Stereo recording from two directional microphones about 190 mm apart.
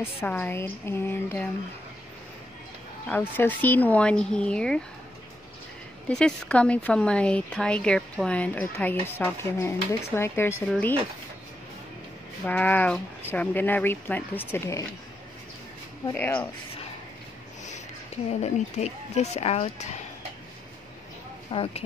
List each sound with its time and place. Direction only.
0.0 s speech: 10° left (ahead or behind)
3.1 s a woman's voice: 10° left (ahead or behind)
6.0 s a woman's voice: 5° left (ahead or behind)
12.4 s speech: 10° left (ahead or behind)
16.1 s speech: 10° left (ahead or behind)
18.4 s speech: 35° left (ahead or behind)
21.5 s speech: 30° left (ahead or behind)